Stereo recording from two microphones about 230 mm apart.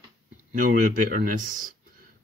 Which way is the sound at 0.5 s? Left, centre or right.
Right.